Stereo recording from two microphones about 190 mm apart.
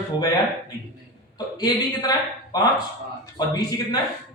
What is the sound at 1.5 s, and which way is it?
Speech, 20° left (ahead or behind).